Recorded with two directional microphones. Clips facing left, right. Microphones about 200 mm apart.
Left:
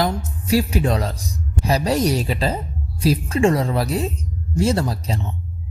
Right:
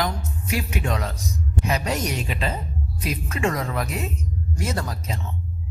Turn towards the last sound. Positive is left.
turn(degrees=30)  # may be behind; listen again after turning